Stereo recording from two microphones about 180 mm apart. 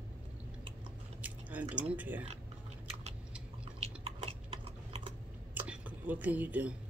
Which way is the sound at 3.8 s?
35° right (ahead or behind).